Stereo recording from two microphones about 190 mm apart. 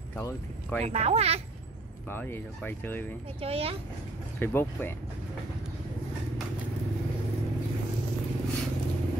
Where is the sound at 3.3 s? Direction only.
30° right (ahead or behind).